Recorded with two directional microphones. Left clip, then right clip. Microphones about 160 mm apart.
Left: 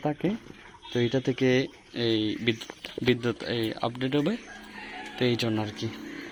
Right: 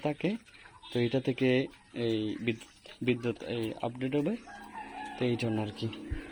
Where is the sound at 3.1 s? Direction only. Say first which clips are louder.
Left 5 dB; centre (ahead or behind).